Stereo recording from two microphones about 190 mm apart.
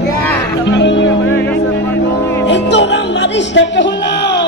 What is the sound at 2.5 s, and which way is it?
Music, 65° left (ahead or behind).